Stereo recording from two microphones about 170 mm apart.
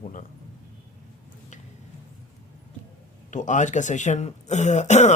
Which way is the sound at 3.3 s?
45° left (ahead or behind).